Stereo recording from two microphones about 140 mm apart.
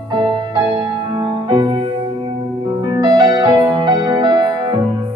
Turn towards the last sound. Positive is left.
turn(degrees=-30)  # may be behind; listen again after turning